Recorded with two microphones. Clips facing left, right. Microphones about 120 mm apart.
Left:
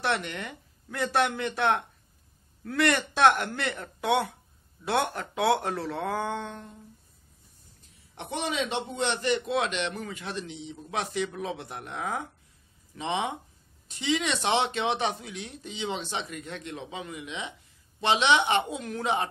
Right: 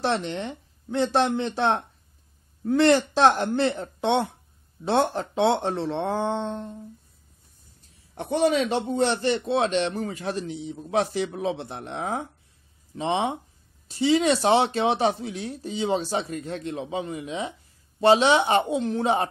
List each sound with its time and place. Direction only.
0.0 s speech: 30° right (ahead or behind)
8.1 s a man's voice: 40° right (ahead or behind)